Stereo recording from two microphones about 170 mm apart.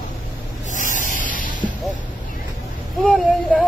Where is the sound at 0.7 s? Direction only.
50° left (ahead or behind).